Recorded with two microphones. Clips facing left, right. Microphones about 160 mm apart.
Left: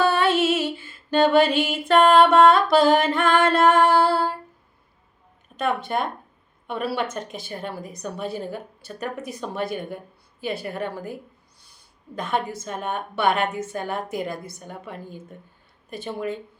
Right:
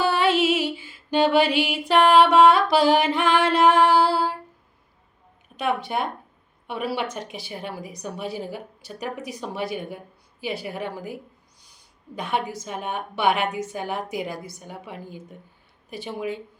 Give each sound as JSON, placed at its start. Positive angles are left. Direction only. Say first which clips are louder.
{"t": 0.0, "sound": "music", "louder": "left 1 dB", "side_deg": -10}
{"t": 1.6, "sound": "a woman's voice", "louder": "left 1 dB", "side_deg": -15}
{"t": 3.2, "sound": "singing", "louder": "left 1 dB", "side_deg": 45}
{"t": 3.5, "sound": "music", "louder": "right 2 dB", "side_deg": -15}
{"t": 5.5, "sound": "a woman's voice", "louder": "left 1 dB", "side_deg": -10}